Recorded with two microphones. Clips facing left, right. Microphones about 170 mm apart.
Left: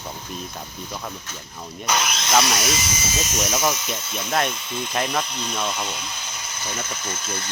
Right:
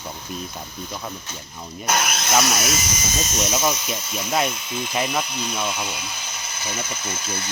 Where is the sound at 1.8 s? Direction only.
55° right (ahead or behind).